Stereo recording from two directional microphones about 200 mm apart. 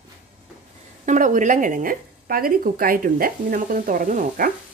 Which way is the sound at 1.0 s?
40° right (ahead or behind).